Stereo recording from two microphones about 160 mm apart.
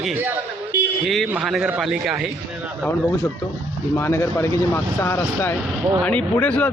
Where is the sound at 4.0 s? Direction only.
15° left (ahead or behind).